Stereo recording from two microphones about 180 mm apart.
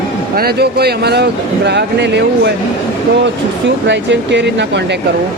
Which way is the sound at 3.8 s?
80° right.